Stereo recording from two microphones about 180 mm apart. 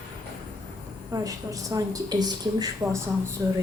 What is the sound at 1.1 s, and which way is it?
Speech, 20° right (ahead or behind).